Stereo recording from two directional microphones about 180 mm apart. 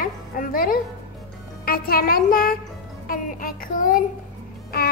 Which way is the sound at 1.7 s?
55° left (ahead or behind).